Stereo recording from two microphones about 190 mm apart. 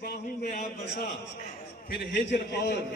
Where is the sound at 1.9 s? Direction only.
60° left (ahead or behind).